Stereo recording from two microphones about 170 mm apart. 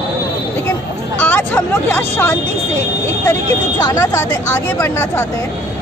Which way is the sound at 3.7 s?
20° left (ahead or behind).